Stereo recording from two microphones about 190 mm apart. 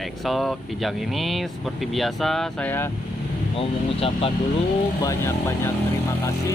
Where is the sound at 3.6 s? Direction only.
30° left (ahead or behind).